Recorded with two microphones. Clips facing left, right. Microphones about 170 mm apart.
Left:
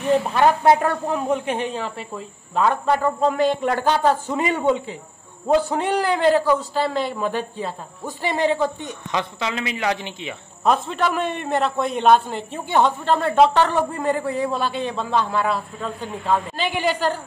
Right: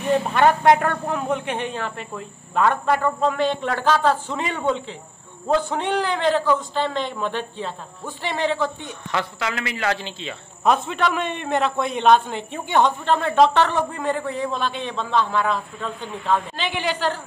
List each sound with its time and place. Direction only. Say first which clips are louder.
0.2 s a man's voice: even; centre (ahead or behind)
3.2 s a man's voice: left 2 dB; 40° left (ahead or behind)
3.6 s a man's voice: left 1 dB; 15° left (ahead or behind)
10.6 s a man's voice: even; centre (ahead or behind)
16.6 s a man's voice: left 3 dB; 40° left (ahead or behind)
16.9 s a man's voice: left 2 dB; 10° left (ahead or behind)